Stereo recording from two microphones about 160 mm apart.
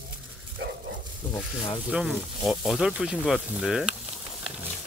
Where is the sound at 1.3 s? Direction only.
25° left (ahead or behind).